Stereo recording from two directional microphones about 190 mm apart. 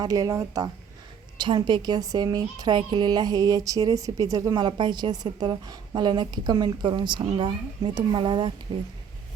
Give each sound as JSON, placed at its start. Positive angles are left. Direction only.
{"t": 0.0, "sound": "speech", "side_deg": -20}